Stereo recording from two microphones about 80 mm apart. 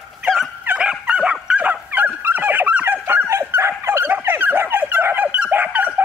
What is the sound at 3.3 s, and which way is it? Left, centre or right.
Dog, right.